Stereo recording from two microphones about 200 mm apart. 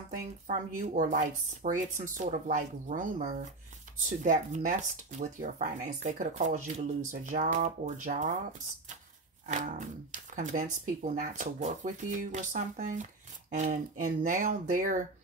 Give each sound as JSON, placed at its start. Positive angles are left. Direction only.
{"t": 0.1, "sound": "speech", "side_deg": -40}
{"t": 9.5, "sound": "speech", "side_deg": -40}